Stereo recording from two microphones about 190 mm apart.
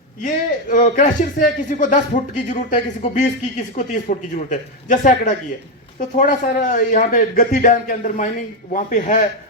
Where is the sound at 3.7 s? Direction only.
40° left (ahead or behind).